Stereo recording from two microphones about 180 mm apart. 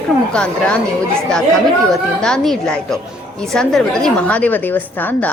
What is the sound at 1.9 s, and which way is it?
A woman's voice, 5° left (ahead or behind).